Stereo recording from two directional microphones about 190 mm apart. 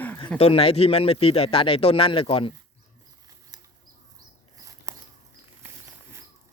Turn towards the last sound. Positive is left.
turn(degrees=-15)  # may be behind; listen again after turning